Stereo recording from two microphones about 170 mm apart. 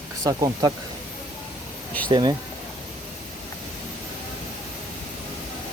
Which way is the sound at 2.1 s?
25° right (ahead or behind).